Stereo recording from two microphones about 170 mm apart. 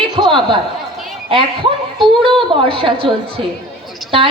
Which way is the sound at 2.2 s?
30° right (ahead or behind).